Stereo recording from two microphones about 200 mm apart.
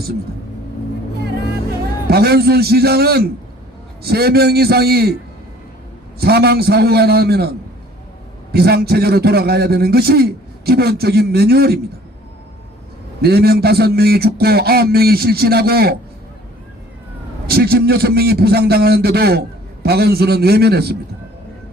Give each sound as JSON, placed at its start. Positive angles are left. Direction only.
{"t": 2.0, "sound": "a man's voice", "side_deg": -50}
{"t": 6.1, "sound": "a man's voice", "side_deg": -50}
{"t": 8.5, "sound": "a man's voice", "side_deg": -50}
{"t": 13.2, "sound": "a man's voice", "side_deg": -50}
{"t": 17.4, "sound": "a man's voice", "side_deg": -50}